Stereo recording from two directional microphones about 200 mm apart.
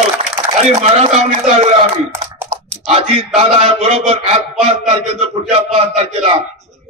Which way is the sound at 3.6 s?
30° right (ahead or behind).